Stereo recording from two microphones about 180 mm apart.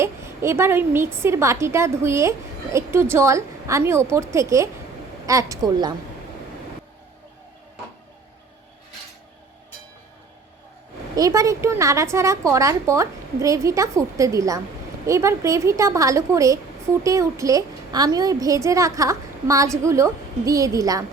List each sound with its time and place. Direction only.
0.0 s a woman's voice: 15° right (ahead or behind)
11.1 s a woman's voice: 20° right (ahead or behind)